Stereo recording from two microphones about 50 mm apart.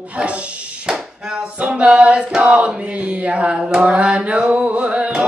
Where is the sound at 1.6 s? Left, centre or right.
Right.